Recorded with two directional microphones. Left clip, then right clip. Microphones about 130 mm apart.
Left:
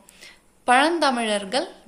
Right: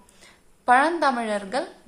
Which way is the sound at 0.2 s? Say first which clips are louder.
Left 8 dB; 15° left (ahead or behind).